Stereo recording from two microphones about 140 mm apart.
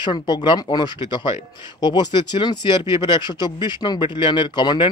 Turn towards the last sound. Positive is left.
turn(degrees=30)  # may be behind; listen again after turning